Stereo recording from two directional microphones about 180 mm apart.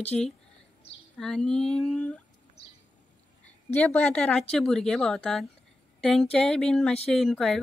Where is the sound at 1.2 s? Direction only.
5° left (ahead or behind).